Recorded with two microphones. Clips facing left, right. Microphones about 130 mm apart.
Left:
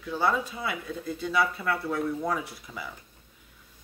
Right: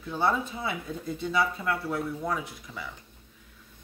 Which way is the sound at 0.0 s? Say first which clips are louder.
Even; 25° right (ahead or behind).